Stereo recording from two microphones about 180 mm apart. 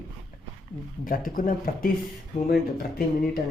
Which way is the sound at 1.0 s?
50° left (ahead or behind).